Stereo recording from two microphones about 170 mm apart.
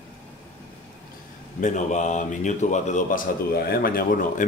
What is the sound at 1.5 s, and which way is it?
Speech, 45° left (ahead or behind).